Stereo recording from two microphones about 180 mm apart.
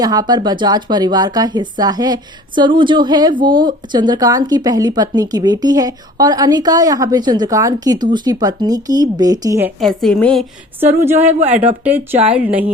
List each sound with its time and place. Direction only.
0.0 s speech: 20° right (ahead or behind)
9.8 s a woman's voice: 5° left (ahead or behind)
10.8 s speech: 10° right (ahead or behind)